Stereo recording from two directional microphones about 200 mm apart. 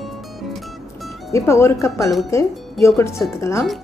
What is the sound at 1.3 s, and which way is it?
Speech, 15° left (ahead or behind).